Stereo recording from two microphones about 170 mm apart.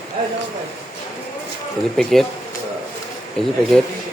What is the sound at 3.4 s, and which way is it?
Speech, 5° left (ahead or behind).